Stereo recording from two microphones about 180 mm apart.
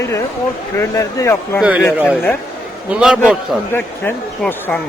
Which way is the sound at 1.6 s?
5° right (ahead or behind).